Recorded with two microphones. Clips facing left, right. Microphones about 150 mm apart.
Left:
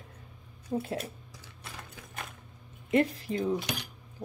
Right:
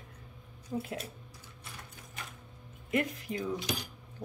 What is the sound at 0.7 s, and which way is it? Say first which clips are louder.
Speech: left 4 dB; 30° left (ahead or behind).